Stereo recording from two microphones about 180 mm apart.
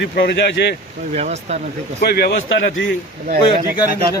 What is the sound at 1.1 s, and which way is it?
Speech, 35° right (ahead or behind).